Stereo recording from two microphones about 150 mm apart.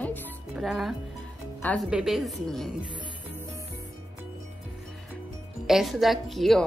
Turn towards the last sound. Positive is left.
turn(degrees=0)  # may be behind; listen again after turning